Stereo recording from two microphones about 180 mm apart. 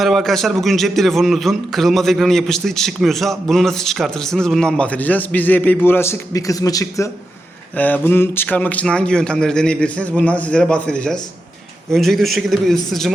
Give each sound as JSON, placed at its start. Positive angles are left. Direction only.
{"t": 0.0, "sound": "a man's voice", "side_deg": 0}